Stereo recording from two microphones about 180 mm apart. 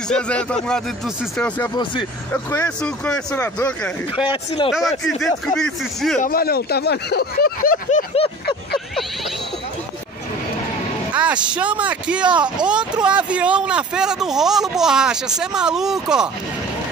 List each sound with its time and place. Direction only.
0.1 s speech: 5° left (ahead or behind)
2.3 s speech: 10° left (ahead or behind)
6.2 s speech: 55° left (ahead or behind)
8.1 s a sound: 30° left (ahead or behind)
11.1 s speech: 5° right (ahead or behind)
12.3 s speech: 25° right (ahead or behind)
13.0 s speech: 5° right (ahead or behind)